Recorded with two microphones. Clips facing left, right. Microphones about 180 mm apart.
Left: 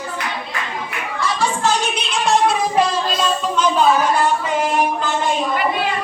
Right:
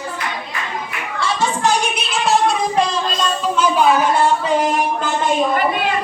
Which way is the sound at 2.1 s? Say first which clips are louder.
Even; centre (ahead or behind).